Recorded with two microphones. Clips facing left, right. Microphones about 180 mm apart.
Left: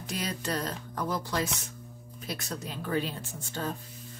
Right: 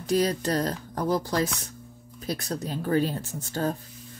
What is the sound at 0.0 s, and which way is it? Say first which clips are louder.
Speech: right 10 dB; 40° right (ahead or behind).